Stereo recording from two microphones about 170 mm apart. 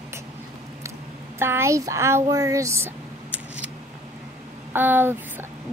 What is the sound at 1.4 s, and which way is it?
Speech, 15° right (ahead or behind).